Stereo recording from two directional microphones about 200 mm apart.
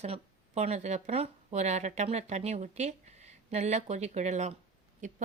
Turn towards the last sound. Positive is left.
turn(degrees=-40)  # may be behind; listen again after turning